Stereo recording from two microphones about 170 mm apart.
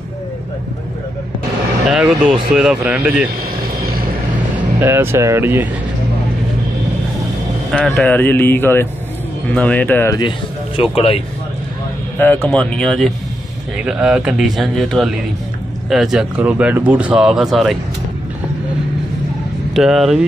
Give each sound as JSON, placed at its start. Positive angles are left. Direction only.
{"t": 1.9, "sound": "speech", "side_deg": -5}
{"t": 4.7, "sound": "speech", "side_deg": -15}
{"t": 7.7, "sound": "speech", "side_deg": 5}
{"t": 10.8, "sound": "a man's voice", "side_deg": 35}
{"t": 12.4, "sound": "speech", "side_deg": 5}
{"t": 19.7, "sound": "speech", "side_deg": 0}